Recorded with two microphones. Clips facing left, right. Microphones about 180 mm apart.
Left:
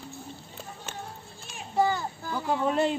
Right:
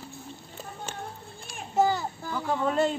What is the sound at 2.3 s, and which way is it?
Speech, 10° left (ahead or behind).